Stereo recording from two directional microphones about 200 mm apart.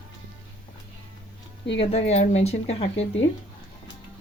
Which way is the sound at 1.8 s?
30° left (ahead or behind).